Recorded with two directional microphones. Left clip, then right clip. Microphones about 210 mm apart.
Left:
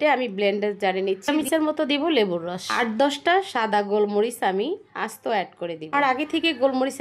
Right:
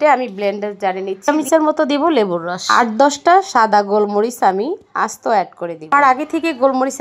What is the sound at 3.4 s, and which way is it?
A woman's voice, 25° right (ahead or behind).